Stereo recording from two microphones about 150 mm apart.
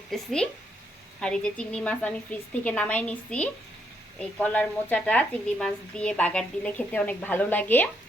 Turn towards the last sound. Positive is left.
turn(degrees=10)  # may be behind; listen again after turning